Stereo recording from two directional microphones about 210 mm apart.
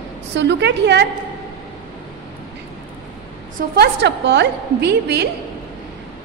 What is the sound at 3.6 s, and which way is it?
A woman's voice, 50° right (ahead or behind).